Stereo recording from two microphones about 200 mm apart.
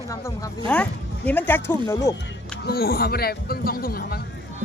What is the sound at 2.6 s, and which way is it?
Speech, 50° left (ahead or behind).